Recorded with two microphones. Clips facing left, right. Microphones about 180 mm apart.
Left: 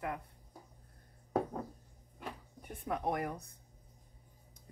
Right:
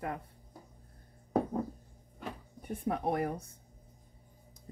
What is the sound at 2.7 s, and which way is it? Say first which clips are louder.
Speech: right 4 dB; 30° right (ahead or behind).